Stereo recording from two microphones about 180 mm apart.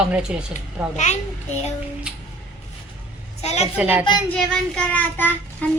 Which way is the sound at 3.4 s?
35° left (ahead or behind).